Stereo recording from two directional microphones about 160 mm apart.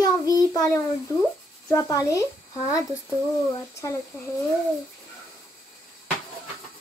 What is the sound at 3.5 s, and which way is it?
Speech, 20° left (ahead or behind).